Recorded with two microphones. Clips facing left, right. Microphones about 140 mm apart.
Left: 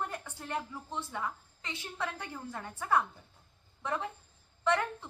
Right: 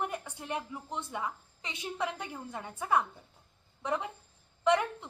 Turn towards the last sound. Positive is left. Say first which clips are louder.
# right 3 dB
turn(degrees=-15)  # may be behind; listen again after turning